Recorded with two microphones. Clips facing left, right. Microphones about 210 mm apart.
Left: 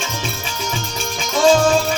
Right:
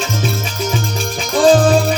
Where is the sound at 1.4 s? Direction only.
35° right (ahead or behind).